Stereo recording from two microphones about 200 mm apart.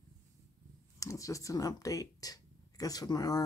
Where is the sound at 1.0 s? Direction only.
15° left (ahead or behind).